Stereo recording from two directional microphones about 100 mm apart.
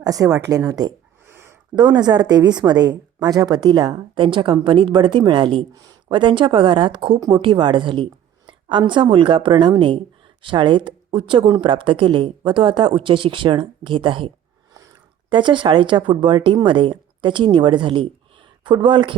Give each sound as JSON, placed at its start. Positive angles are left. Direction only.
{"t": 0.0, "sound": "speech", "side_deg": -35}
{"t": 1.3, "sound": "a sound", "side_deg": -25}
{"t": 1.7, "sound": "a woman's voice", "side_deg": -45}
{"t": 15.3, "sound": "speech", "side_deg": -55}